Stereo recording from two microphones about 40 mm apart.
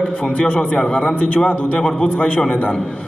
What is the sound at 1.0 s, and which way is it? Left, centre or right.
Speech, left.